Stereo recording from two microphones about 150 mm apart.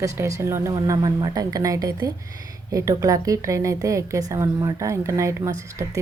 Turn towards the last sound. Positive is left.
turn(degrees=-20)  # may be behind; listen again after turning